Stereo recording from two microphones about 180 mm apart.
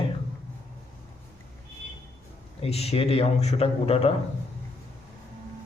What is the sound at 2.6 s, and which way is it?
A man's voice, 35° left (ahead or behind).